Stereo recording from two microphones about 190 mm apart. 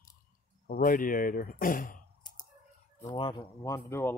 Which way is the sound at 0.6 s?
45° left (ahead or behind).